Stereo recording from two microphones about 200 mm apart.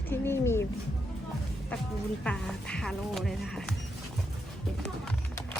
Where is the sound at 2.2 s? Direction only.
5° left (ahead or behind).